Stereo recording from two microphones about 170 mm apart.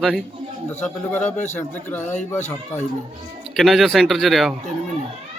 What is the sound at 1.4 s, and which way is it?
Speech, 10° left (ahead or behind).